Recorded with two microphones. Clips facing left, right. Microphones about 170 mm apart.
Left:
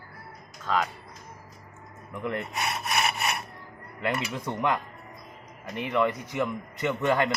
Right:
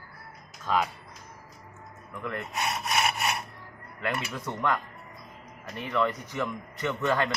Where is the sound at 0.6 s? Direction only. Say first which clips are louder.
Even; 10° right (ahead or behind).